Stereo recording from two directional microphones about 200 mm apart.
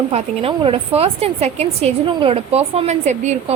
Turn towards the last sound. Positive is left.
turn(degrees=-35)  # may be behind; listen again after turning